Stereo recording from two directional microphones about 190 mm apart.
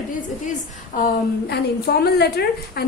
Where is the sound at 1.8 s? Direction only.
55° left (ahead or behind).